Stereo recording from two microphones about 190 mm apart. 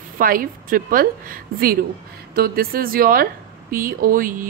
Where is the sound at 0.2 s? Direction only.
50° right (ahead or behind).